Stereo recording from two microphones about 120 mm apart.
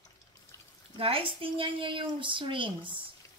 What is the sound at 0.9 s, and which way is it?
A woman's voice, 50° right (ahead or behind).